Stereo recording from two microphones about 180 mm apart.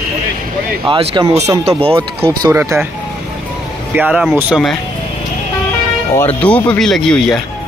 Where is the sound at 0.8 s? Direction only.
25° right (ahead or behind).